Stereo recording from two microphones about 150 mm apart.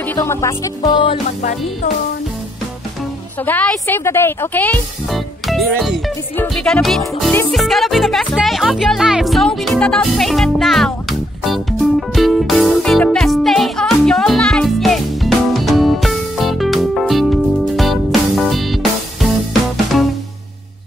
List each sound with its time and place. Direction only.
0.1 s speech: 20° left (ahead or behind)
1.4 s speech: 55° left (ahead or behind)
3.4 s a woman's voice: 10° left (ahead or behind)
5.1 s music: centre (ahead or behind)